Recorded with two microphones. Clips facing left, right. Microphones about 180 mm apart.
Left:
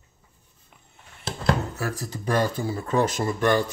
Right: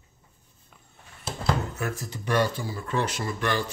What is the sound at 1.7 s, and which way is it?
Speech, 35° left (ahead or behind).